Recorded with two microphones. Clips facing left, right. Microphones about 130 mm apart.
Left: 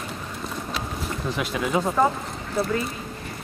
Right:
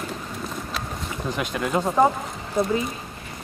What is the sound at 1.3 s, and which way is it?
Speech, centre (ahead or behind).